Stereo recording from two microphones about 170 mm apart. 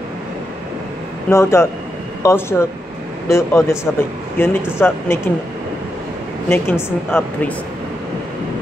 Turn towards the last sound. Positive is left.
turn(degrees=10)  # may be behind; listen again after turning